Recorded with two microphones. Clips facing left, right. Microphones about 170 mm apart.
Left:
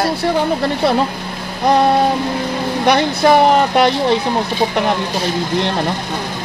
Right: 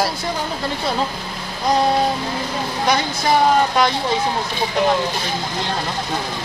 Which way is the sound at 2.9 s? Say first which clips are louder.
Left 6 dB; 60° left (ahead or behind).